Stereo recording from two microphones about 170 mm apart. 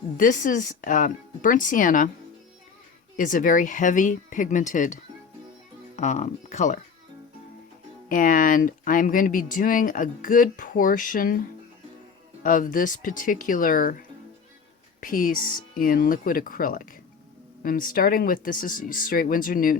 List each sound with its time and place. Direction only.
0.2 s speech: 50° left (ahead or behind)
3.2 s speech: 50° left (ahead or behind)
6.0 s speech: 45° left (ahead or behind)
8.1 s speech: 50° left (ahead or behind)
15.0 s speech: 55° left (ahead or behind)